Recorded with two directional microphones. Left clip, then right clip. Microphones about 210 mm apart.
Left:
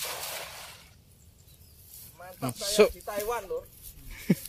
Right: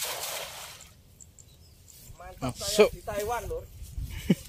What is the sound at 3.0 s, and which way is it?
Speech, 25° left (ahead or behind).